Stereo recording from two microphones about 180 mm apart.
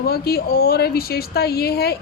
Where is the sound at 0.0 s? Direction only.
60° left (ahead or behind).